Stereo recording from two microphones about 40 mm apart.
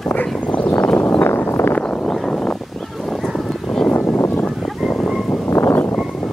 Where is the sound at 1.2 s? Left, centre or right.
Left.